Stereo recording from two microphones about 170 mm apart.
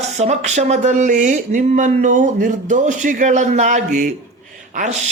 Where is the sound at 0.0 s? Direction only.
40° right (ahead or behind).